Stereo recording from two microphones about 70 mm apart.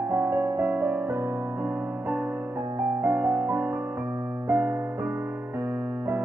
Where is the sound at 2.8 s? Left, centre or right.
Right.